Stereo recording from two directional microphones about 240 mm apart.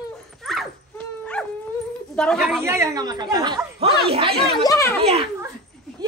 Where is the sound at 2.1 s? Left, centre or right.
Centre.